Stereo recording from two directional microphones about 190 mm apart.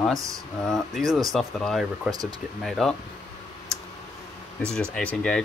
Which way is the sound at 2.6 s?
Centre (ahead or behind).